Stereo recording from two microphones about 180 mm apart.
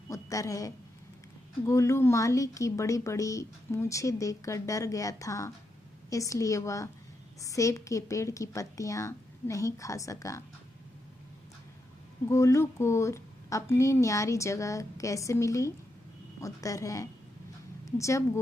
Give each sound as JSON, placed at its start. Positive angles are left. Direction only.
{"t": 0.1, "sound": "a woman's voice", "side_deg": 20}
{"t": 12.3, "sound": "a woman's voice", "side_deg": 15}